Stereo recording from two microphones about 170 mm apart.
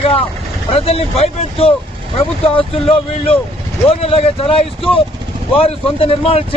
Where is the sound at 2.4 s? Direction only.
30° left (ahead or behind).